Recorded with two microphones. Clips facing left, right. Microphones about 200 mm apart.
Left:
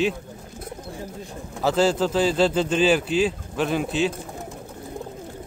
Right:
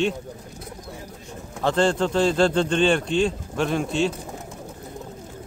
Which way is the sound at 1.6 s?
5° left (ahead or behind).